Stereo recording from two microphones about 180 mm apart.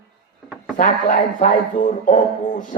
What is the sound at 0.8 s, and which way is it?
Speech, 45° left (ahead or behind).